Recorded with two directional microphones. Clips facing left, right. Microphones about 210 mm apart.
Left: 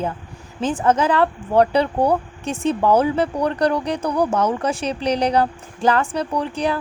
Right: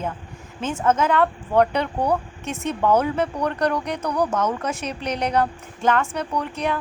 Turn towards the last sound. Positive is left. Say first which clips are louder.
# left 3 dB
turn(degrees=30)  # may be behind; listen again after turning